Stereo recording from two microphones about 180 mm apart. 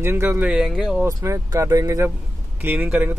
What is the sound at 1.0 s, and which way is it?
Speech, 15° right (ahead or behind).